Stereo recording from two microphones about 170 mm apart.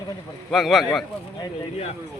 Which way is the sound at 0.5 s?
Centre (ahead or behind).